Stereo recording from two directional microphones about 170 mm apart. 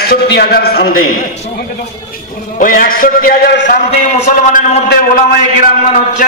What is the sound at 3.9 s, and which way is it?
Speech, 40° left (ahead or behind).